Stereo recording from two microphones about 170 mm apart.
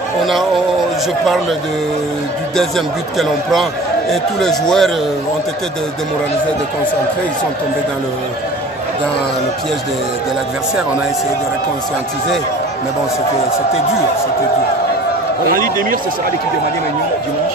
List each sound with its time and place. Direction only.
0.2 s a man's voice: centre (ahead or behind)
4.1 s a man's voice: centre (ahead or behind)
15.5 s speech: 55° right (ahead or behind)